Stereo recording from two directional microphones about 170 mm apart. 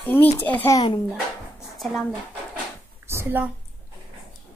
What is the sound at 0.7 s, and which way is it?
Speech, 20° left (ahead or behind).